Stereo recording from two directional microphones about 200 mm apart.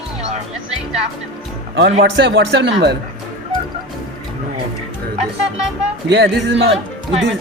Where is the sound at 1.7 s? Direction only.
60° right (ahead or behind).